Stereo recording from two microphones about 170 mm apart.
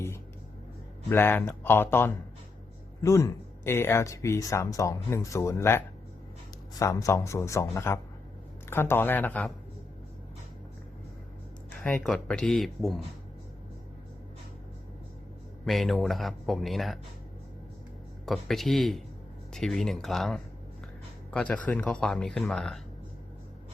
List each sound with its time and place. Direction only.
1.1 s speech: 10° left (ahead or behind)
11.8 s speech: 5° left (ahead or behind)
15.6 s speech: centre (ahead or behind)
18.3 s speech: centre (ahead or behind)